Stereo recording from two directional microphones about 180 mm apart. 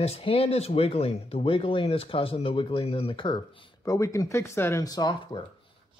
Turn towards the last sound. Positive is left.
turn(degrees=25)  # may be behind; listen again after turning